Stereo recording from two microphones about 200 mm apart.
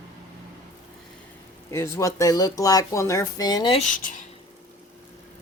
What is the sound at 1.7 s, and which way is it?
Speech, 15° left (ahead or behind).